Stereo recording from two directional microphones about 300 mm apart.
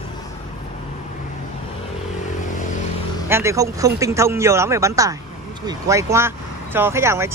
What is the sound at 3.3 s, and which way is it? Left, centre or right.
Speech, centre.